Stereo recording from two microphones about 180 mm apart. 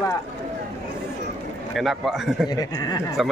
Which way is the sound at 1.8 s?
Centre (ahead or behind).